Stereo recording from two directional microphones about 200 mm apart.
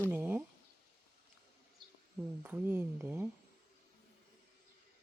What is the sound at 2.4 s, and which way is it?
Speech, 10° right (ahead or behind).